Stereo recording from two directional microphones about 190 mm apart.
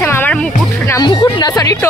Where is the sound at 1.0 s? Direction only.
20° left (ahead or behind).